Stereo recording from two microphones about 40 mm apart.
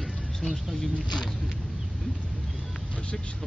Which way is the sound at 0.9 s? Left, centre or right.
Centre.